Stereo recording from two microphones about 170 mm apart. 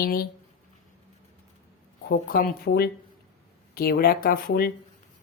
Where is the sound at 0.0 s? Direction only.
60° left (ahead or behind).